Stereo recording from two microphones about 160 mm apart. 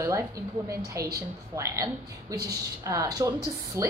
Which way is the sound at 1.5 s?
20° right (ahead or behind).